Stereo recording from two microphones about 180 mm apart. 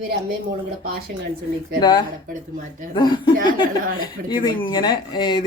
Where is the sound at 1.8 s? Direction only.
25° left (ahead or behind).